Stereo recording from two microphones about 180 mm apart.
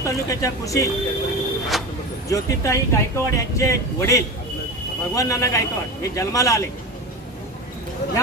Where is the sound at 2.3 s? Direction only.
15° left (ahead or behind).